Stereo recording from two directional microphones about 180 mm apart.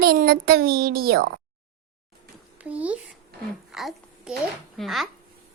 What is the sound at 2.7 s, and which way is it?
Speech, 10° right (ahead or behind).